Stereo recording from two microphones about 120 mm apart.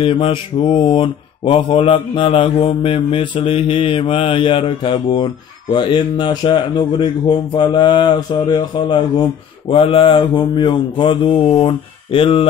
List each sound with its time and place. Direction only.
0.0 s mantra: 50° left (ahead or behind)
9.7 s mantra: 50° left (ahead or behind)